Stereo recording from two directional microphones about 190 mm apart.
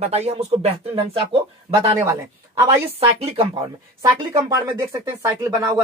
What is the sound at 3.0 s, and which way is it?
Speech, 30° right (ahead or behind).